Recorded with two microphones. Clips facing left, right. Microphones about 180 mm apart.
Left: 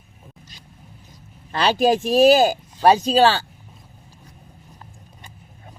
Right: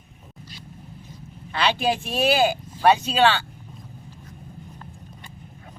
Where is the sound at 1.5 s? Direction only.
40° left (ahead or behind).